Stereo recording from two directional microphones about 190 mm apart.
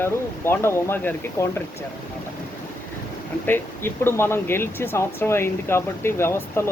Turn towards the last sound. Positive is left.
turn(degrees=15)  # may be behind; listen again after turning